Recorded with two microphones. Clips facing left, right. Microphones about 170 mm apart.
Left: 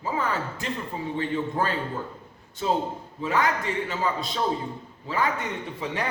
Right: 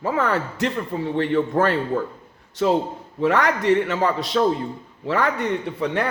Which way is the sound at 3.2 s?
75° right (ahead or behind).